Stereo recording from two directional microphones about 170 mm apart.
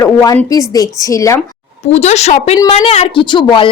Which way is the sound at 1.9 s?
40° left (ahead or behind).